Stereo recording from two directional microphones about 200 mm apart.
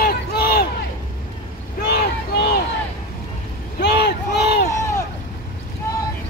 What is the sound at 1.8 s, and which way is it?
Vehicle, 55° left (ahead or behind).